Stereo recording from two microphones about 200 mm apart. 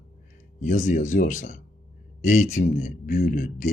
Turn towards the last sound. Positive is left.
turn(degrees=40)  # may be behind; listen again after turning